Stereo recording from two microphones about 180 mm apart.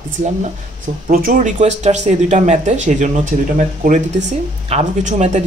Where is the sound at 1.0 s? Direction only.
50° right (ahead or behind).